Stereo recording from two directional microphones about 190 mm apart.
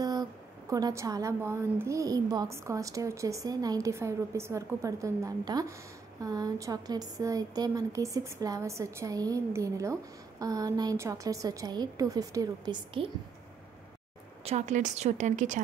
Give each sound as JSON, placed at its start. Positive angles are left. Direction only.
{"t": 0.0, "sound": "a woman's voice", "side_deg": -20}
{"t": 14.4, "sound": "a woman's voice", "side_deg": -35}